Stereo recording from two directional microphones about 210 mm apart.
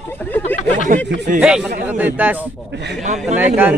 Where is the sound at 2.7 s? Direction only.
55° right (ahead or behind).